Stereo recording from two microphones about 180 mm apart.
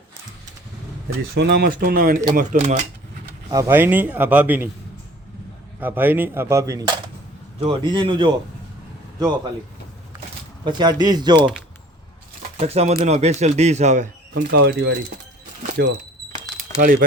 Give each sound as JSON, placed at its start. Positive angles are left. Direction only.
{"t": 1.4, "sound": "speech", "side_deg": -60}
{"t": 3.5, "sound": "speech", "side_deg": -15}
{"t": 5.8, "sound": "speech", "side_deg": -10}
{"t": 7.6, "sound": "speech", "side_deg": -30}
{"t": 10.7, "sound": "speech", "side_deg": -25}
{"t": 12.5, "sound": "speech", "side_deg": -35}
{"t": 14.3, "sound": "speech", "side_deg": -75}